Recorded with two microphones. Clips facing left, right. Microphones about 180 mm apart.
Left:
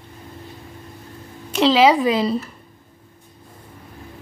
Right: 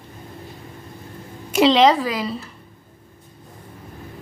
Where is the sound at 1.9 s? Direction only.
25° left (ahead or behind).